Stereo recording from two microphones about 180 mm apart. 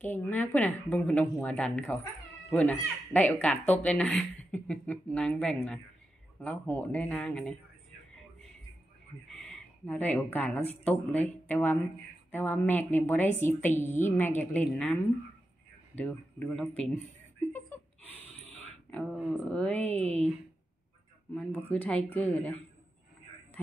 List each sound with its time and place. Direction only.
0.0 s speech: 10° left (ahead or behind)
3.1 s speech: 10° left (ahead or behind)
9.8 s speech: 10° left (ahead or behind)
16.0 s speech: 5° left (ahead or behind)
17.5 s a sound: 10° left (ahead or behind)
18.9 s speech: 5° left (ahead or behind)
20.0 s speech: 35° right (ahead or behind)
21.7 s speech: 10° left (ahead or behind)